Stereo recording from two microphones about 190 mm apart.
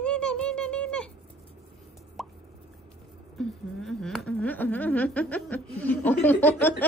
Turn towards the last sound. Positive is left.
turn(degrees=10)  # may be behind; listen again after turning